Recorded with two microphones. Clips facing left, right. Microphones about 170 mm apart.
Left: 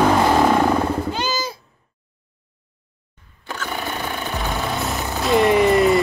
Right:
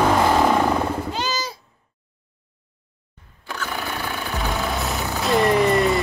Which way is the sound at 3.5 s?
10° left (ahead or behind).